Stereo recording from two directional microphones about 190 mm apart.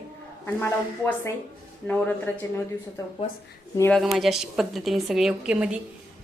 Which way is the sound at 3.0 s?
20° left (ahead or behind).